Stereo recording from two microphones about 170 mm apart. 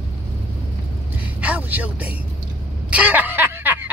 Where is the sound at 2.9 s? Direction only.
10° right (ahead or behind).